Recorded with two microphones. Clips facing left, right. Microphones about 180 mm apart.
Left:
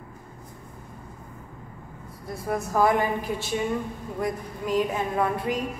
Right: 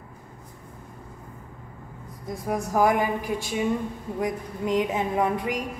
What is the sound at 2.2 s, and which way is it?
A woman's voice, 15° right (ahead or behind).